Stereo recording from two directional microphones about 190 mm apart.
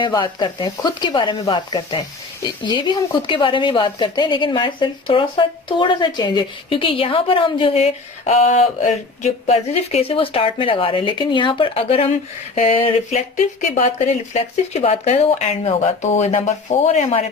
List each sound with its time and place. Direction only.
0.0 s speech: 20° left (ahead or behind)